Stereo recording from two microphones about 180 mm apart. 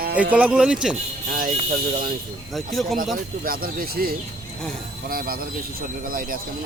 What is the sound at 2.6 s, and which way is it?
Speech, centre (ahead or behind).